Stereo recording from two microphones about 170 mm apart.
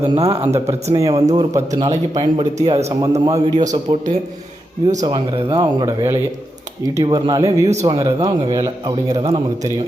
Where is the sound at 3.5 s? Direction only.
45° right (ahead or behind).